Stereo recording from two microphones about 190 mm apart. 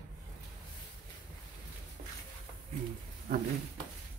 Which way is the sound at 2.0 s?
40° right (ahead or behind).